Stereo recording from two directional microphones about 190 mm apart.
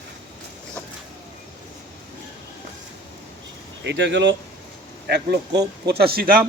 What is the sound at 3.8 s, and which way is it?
A man's voice, 65° right (ahead or behind).